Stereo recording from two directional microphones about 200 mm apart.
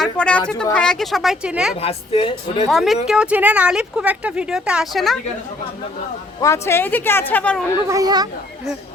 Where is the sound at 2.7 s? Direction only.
Centre (ahead or behind).